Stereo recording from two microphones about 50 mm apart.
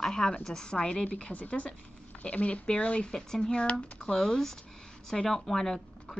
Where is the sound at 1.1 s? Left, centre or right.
Left.